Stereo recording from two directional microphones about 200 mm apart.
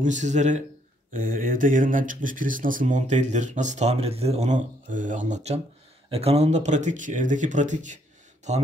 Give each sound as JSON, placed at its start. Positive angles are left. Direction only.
{"t": 0.0, "sound": "speech", "side_deg": -35}